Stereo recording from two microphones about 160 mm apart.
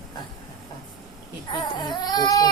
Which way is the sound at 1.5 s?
25° left (ahead or behind).